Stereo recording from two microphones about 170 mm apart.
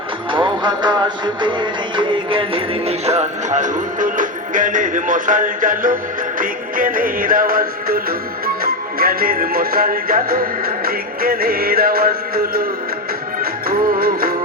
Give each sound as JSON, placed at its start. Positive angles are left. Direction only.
{"t": 0.3, "sound": "music", "side_deg": -30}